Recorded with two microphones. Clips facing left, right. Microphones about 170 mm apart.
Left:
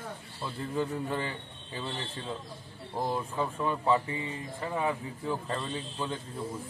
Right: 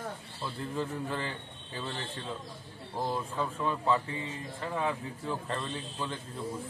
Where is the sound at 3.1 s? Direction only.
10° left (ahead or behind).